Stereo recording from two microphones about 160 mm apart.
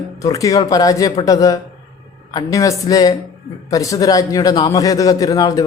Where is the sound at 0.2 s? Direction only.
20° left (ahead or behind).